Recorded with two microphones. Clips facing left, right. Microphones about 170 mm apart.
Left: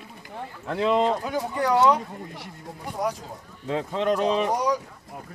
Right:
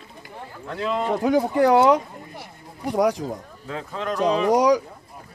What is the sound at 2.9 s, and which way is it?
Speech, 80° right.